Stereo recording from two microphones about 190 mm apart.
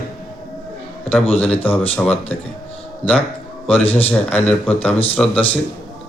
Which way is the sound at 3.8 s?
30° left (ahead or behind).